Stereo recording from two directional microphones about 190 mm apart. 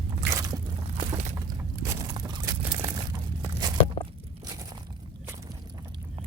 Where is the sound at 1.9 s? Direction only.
20° right (ahead or behind).